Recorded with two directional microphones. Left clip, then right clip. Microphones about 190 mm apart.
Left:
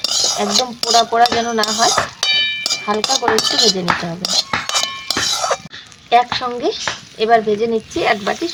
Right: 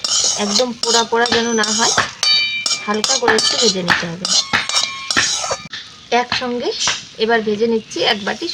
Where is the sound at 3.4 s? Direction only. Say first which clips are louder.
Left 1 dB; 25° left (ahead or behind).